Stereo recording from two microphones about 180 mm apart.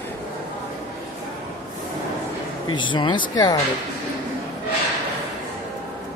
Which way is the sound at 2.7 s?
25° left (ahead or behind).